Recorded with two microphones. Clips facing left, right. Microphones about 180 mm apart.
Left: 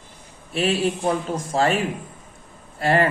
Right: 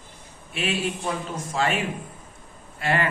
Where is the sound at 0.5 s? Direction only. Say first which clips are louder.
Left 6 dB; 35° left (ahead or behind).